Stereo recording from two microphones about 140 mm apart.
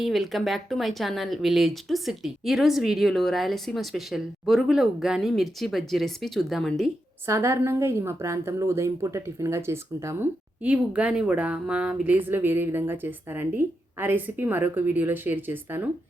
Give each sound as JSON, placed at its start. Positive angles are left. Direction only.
{"t": 0.0, "sound": "speech", "side_deg": 0}
{"t": 7.3, "sound": "a woman's voice", "side_deg": -20}